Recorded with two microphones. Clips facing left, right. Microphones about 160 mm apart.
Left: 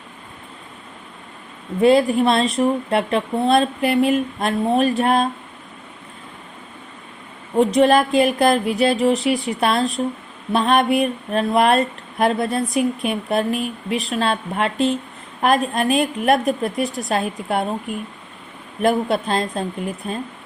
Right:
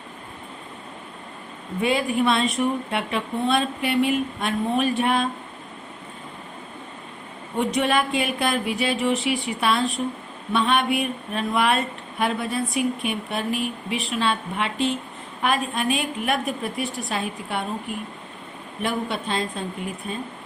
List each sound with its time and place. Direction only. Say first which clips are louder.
1.8 s speech: left 7 dB; 35° left (ahead or behind)
7.5 s speech: left 8 dB; 35° left (ahead or behind)
18.8 s speech: left 8 dB; 40° left (ahead or behind)